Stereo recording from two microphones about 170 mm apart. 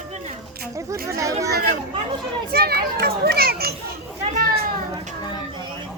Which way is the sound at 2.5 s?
65° right (ahead or behind).